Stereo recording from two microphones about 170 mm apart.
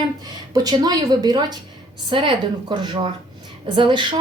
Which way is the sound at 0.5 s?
25° right (ahead or behind).